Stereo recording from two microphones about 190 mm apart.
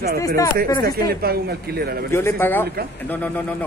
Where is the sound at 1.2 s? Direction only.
55° right (ahead or behind).